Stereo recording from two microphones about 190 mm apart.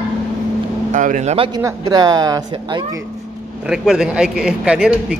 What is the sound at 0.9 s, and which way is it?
Speech, 45° right (ahead or behind).